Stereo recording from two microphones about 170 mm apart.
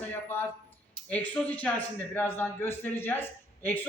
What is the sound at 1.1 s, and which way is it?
A man's voice, 10° left (ahead or behind).